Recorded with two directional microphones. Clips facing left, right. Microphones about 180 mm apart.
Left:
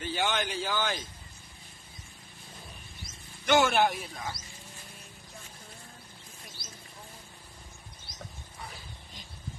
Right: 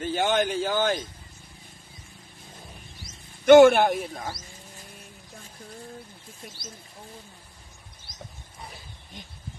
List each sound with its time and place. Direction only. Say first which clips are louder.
0.0 s speech: right 7 dB; 45° right (ahead or behind)
3.4 s speech: right 11 dB; 55° right (ahead or behind)